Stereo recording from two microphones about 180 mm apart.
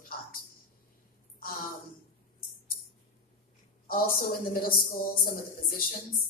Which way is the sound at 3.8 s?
50° left (ahead or behind).